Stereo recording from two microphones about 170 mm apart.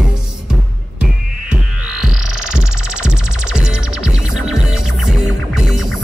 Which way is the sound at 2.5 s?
5° right (ahead or behind).